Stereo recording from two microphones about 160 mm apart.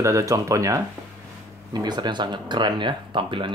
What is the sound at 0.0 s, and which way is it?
Speech, 20° right (ahead or behind).